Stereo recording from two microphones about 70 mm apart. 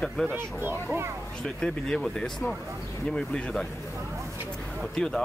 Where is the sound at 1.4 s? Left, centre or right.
Centre.